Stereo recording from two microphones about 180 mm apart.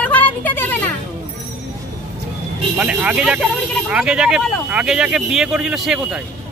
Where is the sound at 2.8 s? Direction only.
5° right (ahead or behind).